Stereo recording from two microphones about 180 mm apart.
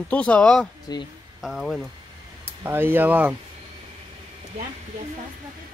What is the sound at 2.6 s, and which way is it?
Speech, 10° right (ahead or behind).